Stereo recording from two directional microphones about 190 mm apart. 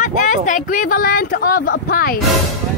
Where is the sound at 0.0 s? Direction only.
40° left (ahead or behind).